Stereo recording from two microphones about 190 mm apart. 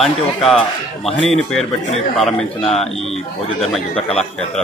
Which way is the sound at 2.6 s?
35° left (ahead or behind).